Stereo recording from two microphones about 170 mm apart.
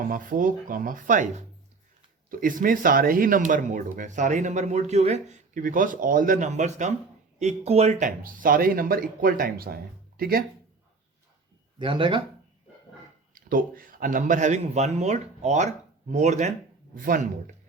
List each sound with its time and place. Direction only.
0.0 s speech: 55° right (ahead or behind)
11.8 s speech: 30° right (ahead or behind)
13.3 s speech: 55° right (ahead or behind)
16.9 s speech: 55° right (ahead or behind)